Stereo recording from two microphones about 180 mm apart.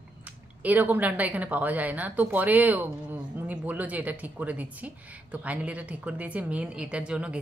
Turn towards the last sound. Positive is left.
turn(degrees=-5)  # may be behind; listen again after turning